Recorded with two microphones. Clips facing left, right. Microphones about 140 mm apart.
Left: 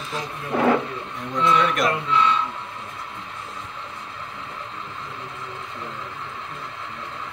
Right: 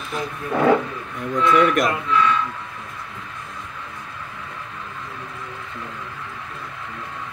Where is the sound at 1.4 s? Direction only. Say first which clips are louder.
Right 3 dB; 25° left (ahead or behind).